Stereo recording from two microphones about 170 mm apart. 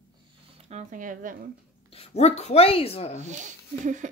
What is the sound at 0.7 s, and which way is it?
Speech, 45° right (ahead or behind).